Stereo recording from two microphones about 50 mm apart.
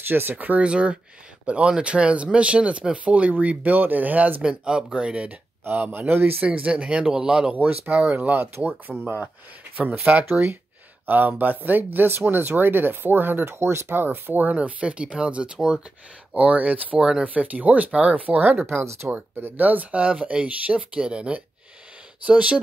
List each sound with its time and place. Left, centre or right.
0.1 s speech: right
0.6 s speech: right
4.4 s speech: centre
5.6 s speech: right
6.4 s speech: right
7.5 s speech: right
10.1 s speech: right
13.5 s speech: right; by 15.8 s centre
16.3 s speech: right
17.0 s speech: centre
17.3 s speech: right
19.4 s speech: right